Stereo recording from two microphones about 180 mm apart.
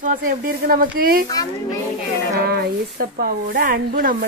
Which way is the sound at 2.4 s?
60° right (ahead or behind).